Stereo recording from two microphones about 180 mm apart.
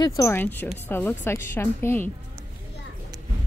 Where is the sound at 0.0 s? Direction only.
20° left (ahead or behind).